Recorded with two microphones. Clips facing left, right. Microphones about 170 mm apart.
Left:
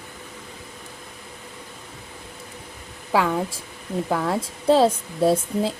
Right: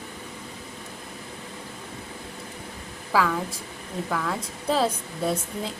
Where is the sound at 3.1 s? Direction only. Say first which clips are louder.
Left 3 dB; 25° left (ahead or behind).